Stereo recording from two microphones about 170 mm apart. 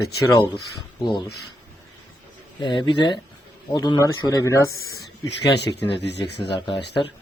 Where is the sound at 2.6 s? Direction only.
25° left (ahead or behind).